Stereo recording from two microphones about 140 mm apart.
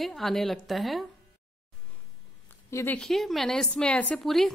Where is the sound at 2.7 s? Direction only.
20° left (ahead or behind).